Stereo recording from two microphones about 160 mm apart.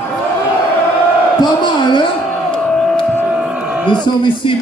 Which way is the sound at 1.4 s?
30° left (ahead or behind).